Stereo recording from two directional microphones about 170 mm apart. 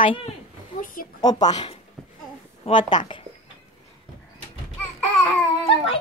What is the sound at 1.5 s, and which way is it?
A woman's voice, 35° left (ahead or behind).